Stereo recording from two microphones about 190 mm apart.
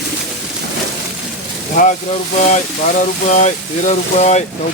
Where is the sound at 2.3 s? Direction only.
40° left (ahead or behind).